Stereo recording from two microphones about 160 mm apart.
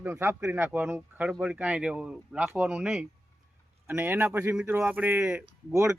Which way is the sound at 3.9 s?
15° right (ahead or behind).